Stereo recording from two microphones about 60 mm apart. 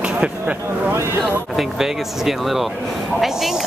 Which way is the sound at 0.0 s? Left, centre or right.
Centre.